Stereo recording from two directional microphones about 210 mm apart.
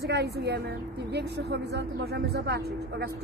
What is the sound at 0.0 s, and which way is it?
A woman's voice, 50° right (ahead or behind).